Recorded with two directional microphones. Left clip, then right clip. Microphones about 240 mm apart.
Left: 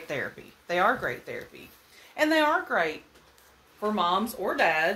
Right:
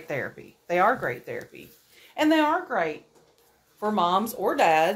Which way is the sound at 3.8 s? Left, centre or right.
Right.